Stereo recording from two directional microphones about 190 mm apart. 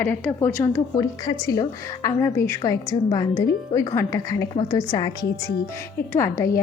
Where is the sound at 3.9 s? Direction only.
15° left (ahead or behind).